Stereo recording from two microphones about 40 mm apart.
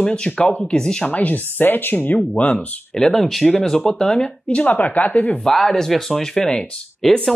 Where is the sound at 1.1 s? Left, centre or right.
Left.